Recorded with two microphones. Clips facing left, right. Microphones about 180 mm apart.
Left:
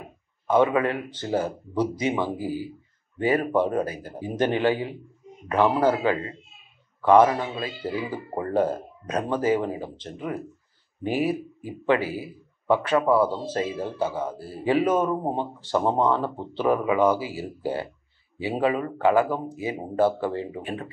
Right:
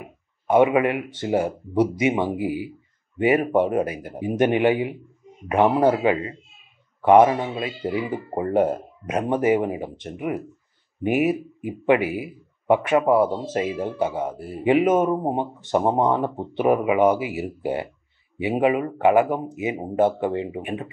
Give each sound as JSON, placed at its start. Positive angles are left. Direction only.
{"t": 0.6, "sound": "a man's voice", "side_deg": -15}
{"t": 2.4, "sound": "speech", "side_deg": -70}
{"t": 3.2, "sound": "a man's voice", "side_deg": -20}